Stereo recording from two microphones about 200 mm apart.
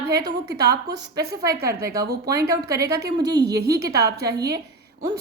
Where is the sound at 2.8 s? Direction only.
55° right (ahead or behind).